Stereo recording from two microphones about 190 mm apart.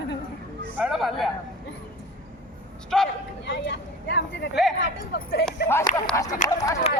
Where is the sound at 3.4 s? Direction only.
65° left (ahead or behind).